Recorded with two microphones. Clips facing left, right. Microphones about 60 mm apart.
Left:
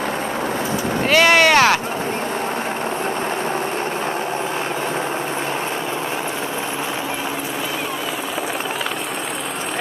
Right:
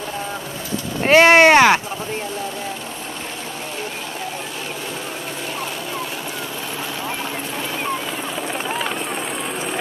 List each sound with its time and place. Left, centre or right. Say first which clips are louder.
1.0 s boat: right 4 dB; right